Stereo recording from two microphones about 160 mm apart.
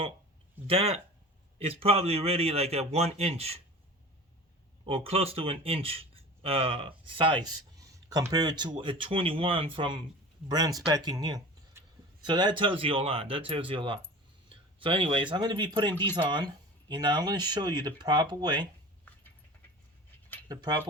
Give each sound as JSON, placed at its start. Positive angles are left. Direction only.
{"t": 0.7, "sound": "speech", "side_deg": -40}
{"t": 4.9, "sound": "speech", "side_deg": -35}
{"t": 20.5, "sound": "speech", "side_deg": -25}